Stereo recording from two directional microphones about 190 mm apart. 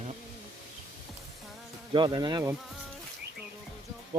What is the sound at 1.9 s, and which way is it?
Speech, 25° right (ahead or behind).